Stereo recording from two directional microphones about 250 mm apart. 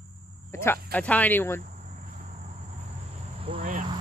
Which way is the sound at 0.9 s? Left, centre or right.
Centre.